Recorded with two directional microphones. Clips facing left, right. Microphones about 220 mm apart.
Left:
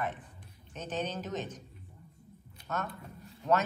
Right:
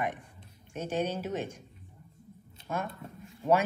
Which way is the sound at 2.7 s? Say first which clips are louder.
Right 2 dB; 10° right (ahead or behind).